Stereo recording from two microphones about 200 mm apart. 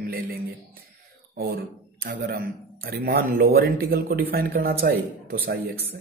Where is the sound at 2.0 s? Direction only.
50° right (ahead or behind).